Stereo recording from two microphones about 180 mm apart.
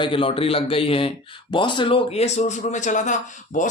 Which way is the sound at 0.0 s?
30° left (ahead or behind).